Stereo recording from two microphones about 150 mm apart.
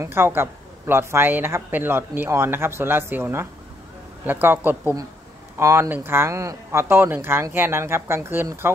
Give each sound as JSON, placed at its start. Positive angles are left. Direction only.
{"t": 0.0, "sound": "speech", "side_deg": -15}